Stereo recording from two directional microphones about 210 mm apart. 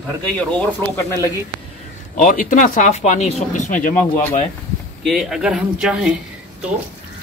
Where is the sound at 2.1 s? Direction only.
40° left (ahead or behind).